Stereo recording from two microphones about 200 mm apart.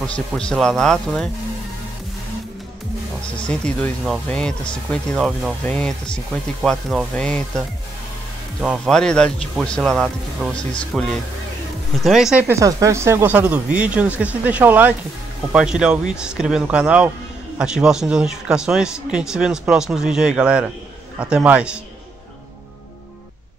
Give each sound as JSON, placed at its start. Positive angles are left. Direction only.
{"t": 0.0, "sound": "speech", "side_deg": 5}
{"t": 3.4, "sound": "speech", "side_deg": 5}
{"t": 8.6, "sound": "speech", "side_deg": 5}